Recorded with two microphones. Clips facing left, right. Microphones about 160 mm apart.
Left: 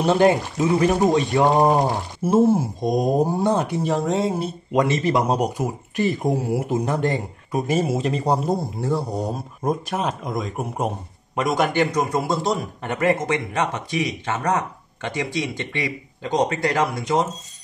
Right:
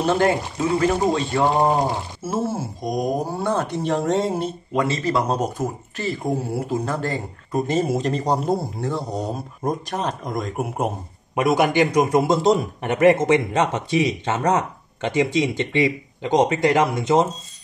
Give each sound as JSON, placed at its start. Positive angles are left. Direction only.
{"t": 0.0, "sound": "speech", "side_deg": 20}
{"t": 3.3, "sound": "speech", "side_deg": 15}
{"t": 4.7, "sound": "speech", "side_deg": 20}
{"t": 7.6, "sound": "a man's voice", "side_deg": 5}